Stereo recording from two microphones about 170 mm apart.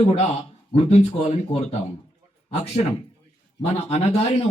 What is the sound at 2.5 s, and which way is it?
A man's voice, 40° left (ahead or behind).